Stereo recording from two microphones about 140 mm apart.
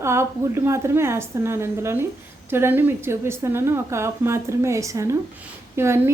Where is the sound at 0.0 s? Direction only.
20° right (ahead or behind).